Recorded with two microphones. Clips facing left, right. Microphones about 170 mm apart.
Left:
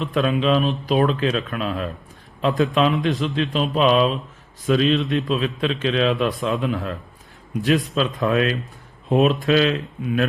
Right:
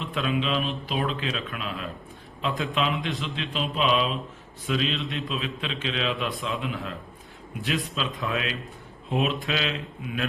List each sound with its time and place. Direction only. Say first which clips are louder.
0.1 s a man's voice: left 7 dB; 45° left (ahead or behind)